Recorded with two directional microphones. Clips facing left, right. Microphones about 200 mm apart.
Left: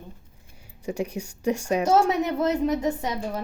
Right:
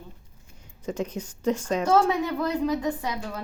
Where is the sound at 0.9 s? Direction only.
10° left (ahead or behind).